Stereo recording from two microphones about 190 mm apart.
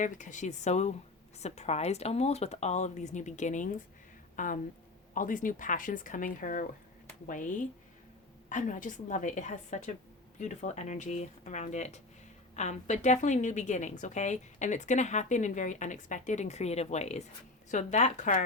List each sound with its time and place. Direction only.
0.0 s a woman's voice: 40° left (ahead or behind)